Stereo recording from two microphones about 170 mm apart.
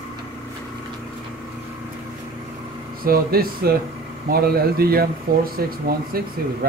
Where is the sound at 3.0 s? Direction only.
60° right (ahead or behind).